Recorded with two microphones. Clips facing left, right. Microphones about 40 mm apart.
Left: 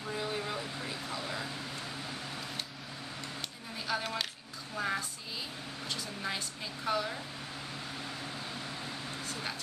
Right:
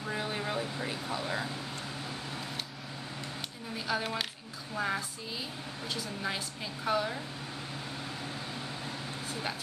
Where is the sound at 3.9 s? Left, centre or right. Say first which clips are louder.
Right 1 dB; centre.